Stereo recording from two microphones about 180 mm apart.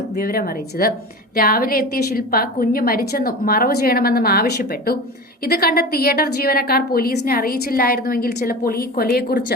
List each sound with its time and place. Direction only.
0.2 s a woman's voice: 55° left (ahead or behind)